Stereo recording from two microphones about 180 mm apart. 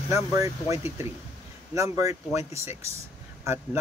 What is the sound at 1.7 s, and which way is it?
Speech, 15° right (ahead or behind).